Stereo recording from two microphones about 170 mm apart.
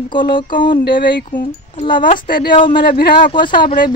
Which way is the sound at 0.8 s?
90° left.